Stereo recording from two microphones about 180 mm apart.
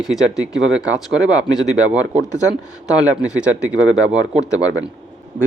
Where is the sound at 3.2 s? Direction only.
5° right (ahead or behind).